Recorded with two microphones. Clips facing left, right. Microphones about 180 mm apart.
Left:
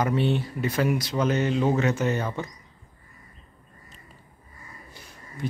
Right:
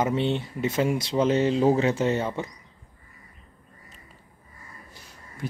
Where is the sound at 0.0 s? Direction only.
20° right (ahead or behind).